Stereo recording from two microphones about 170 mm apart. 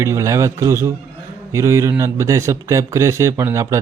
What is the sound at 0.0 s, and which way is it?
A man's voice, 15° right (ahead or behind).